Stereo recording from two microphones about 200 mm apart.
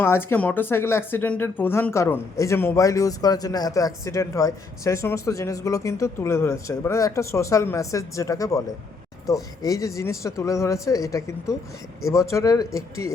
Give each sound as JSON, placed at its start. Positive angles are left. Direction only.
{"t": 0.0, "sound": "speech", "side_deg": 10}